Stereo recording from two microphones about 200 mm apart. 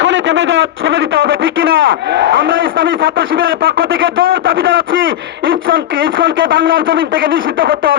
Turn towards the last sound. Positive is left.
turn(degrees=-45)  # may be behind; listen again after turning